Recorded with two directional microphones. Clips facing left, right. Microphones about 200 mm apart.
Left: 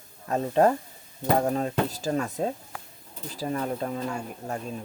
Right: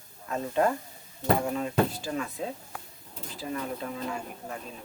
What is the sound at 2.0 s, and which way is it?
Speech, 40° left (ahead or behind).